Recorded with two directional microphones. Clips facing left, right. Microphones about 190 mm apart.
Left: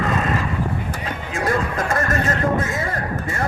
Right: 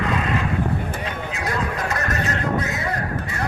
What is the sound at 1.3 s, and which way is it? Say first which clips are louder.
Neigh: left 6 dB; 50° left (ahead or behind).